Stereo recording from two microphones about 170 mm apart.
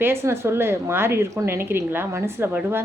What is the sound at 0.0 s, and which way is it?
Speech, 15° right (ahead or behind).